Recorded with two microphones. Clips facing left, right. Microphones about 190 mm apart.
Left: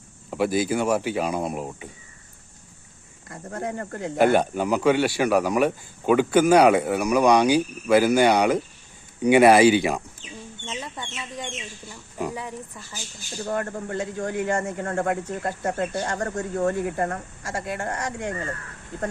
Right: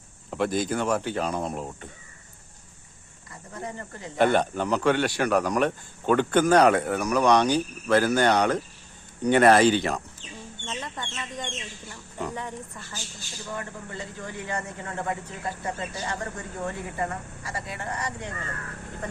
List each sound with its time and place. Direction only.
0.3 s speech: 5° left (ahead or behind)
3.2 s speech: 55° left (ahead or behind)
4.2 s speech: 5° left (ahead or behind)
13.4 s speech: 60° left (ahead or behind)